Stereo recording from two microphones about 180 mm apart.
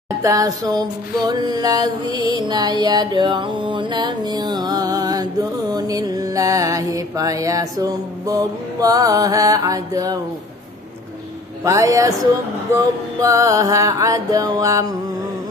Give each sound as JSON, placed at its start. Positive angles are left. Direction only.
{"t": 0.2, "sound": "music", "side_deg": -20}
{"t": 11.6, "sound": "speech", "side_deg": -20}
{"t": 12.7, "sound": "music", "side_deg": -20}